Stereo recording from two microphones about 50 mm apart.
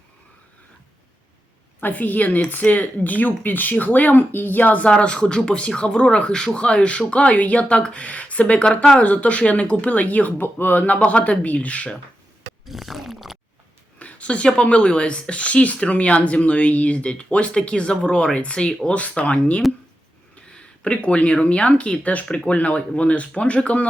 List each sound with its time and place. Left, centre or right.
1.8 s speech: left
4.9 s speech: left
10.9 s speech: left
12.6 s a sound: centre
14.0 s speech: left